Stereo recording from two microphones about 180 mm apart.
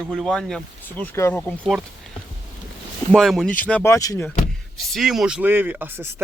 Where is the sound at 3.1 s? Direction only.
Centre (ahead or behind); by 4.3 s 20° left (ahead or behind).